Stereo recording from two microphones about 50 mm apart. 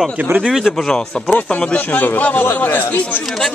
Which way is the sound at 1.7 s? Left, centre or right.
Left.